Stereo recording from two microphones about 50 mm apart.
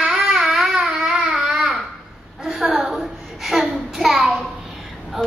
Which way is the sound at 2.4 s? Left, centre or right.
Centre.